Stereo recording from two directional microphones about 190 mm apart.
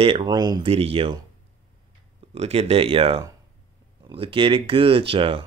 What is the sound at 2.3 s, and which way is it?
Speech, 30° right (ahead or behind).